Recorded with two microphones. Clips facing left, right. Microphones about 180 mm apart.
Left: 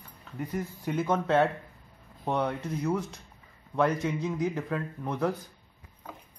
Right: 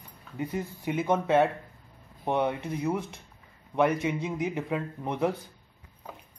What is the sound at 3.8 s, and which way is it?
Speech, 10° right (ahead or behind).